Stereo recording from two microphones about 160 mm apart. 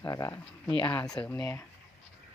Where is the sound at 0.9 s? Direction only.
5° left (ahead or behind).